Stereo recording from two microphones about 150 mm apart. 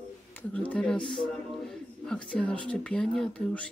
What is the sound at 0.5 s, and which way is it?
Speech, 10° left (ahead or behind).